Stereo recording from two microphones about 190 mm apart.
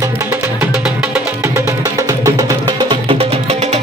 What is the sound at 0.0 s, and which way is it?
Music, 15° right (ahead or behind).